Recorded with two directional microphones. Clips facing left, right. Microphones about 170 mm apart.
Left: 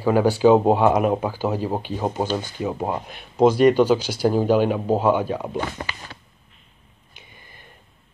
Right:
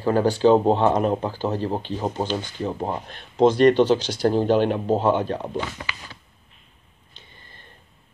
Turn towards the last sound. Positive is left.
turn(degrees=10)  # may be behind; listen again after turning